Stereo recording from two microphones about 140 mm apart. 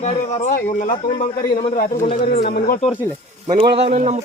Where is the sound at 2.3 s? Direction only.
90° left.